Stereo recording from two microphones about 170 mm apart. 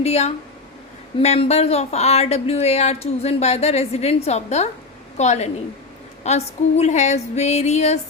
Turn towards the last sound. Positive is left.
turn(degrees=40)  # may be behind; listen again after turning